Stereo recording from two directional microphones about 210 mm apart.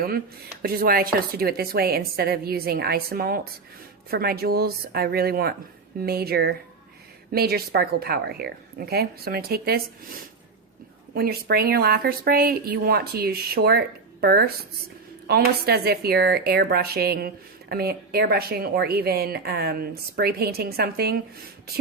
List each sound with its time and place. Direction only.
0.6 s a woman's voice: 45° right (ahead or behind)
11.1 s a woman's voice: 45° right (ahead or behind)